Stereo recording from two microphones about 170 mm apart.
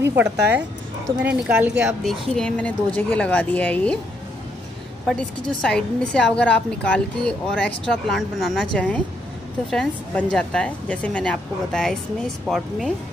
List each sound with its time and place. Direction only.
0.1 s a woman's voice: 10° right (ahead or behind); by 4.0 s 10° left (ahead or behind)
5.0 s a woman's voice: 5° left (ahead or behind)